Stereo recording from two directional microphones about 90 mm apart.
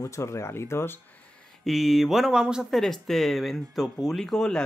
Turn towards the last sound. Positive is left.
turn(degrees=5)  # may be behind; listen again after turning